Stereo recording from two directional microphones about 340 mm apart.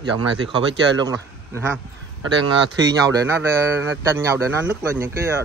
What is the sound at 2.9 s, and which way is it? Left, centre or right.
Speech, centre.